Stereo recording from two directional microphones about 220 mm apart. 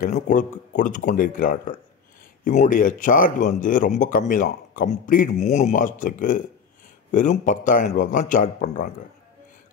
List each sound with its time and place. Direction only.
0.0 s speech: 35° left (ahead or behind)